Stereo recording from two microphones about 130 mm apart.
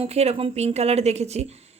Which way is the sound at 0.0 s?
50° right (ahead or behind).